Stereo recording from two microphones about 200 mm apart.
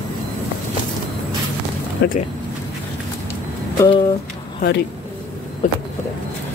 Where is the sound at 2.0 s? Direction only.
55° left (ahead or behind).